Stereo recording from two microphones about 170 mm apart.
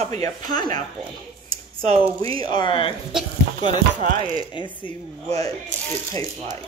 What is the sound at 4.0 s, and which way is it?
Speech, 50° right (ahead or behind).